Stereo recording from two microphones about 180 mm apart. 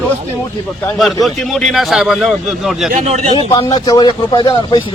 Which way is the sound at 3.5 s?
20° left (ahead or behind).